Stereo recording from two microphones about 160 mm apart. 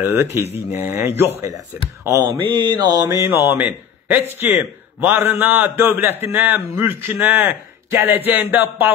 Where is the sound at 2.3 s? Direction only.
30° right (ahead or behind).